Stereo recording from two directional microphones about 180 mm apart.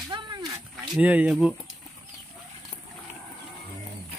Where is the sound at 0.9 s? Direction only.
10° right (ahead or behind).